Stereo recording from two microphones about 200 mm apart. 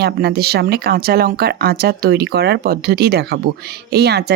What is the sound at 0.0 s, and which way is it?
A woman's voice, 50° right (ahead or behind).